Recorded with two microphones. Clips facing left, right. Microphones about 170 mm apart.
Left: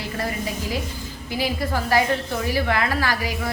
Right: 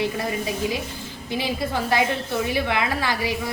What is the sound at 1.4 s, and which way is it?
A woman's voice, 20° right (ahead or behind).